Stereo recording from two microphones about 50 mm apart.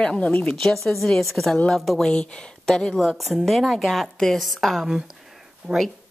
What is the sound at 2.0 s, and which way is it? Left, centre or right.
Speech, centre.